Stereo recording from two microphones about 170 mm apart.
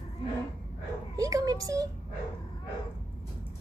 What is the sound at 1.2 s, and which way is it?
Speech, 20° right (ahead or behind).